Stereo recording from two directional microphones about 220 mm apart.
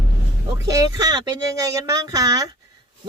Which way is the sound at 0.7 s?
15° right (ahead or behind).